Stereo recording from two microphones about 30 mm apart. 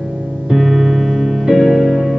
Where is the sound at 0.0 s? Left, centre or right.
Centre.